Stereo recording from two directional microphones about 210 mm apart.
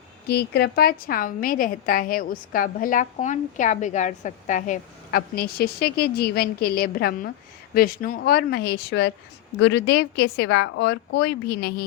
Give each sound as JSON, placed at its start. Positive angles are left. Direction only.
{"t": 0.3, "sound": "a woman's voice", "side_deg": 50}